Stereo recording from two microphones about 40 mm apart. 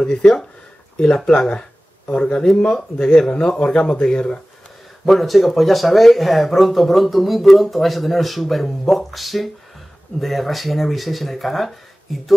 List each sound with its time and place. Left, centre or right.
0.9 s speech: centre
1.5 s a sound: left
2.7 s speech: left
5.0 s speech: centre